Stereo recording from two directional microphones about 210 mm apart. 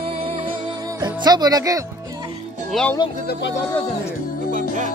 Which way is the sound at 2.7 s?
5° left (ahead or behind).